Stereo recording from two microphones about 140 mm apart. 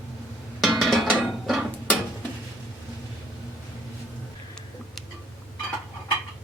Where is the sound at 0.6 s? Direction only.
Centre (ahead or behind).